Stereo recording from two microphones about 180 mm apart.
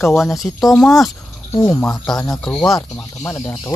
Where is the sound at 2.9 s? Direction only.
15° left (ahead or behind).